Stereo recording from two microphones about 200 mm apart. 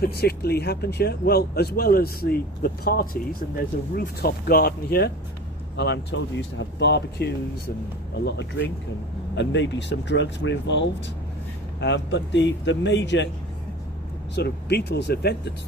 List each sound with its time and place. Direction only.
0.0 s speech: 50° left (ahead or behind)
14.3 s speech: 55° left (ahead or behind)